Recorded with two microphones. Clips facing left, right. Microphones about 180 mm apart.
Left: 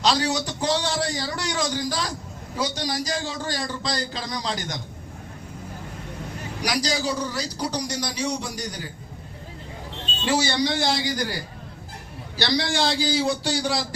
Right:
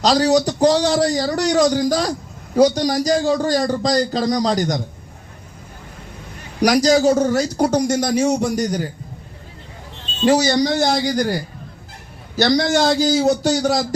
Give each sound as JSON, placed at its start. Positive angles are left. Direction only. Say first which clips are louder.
{"t": 0.0, "sound": "a man's voice", "louder": "right 8 dB", "side_deg": -40}
{"t": 6.6, "sound": "speech", "louder": "right 12 dB", "side_deg": -45}
{"t": 10.2, "sound": "speech", "louder": "right 8 dB", "side_deg": -40}
{"t": 12.4, "sound": "speech", "louder": "right 8 dB", "side_deg": -45}